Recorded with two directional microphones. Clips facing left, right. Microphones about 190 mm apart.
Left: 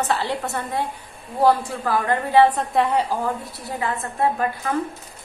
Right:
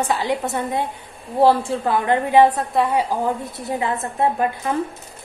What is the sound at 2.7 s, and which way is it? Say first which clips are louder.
Speech: right 1 dB; centre (ahead or behind).